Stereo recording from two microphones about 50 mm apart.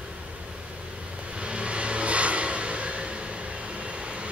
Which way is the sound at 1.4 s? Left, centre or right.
Right.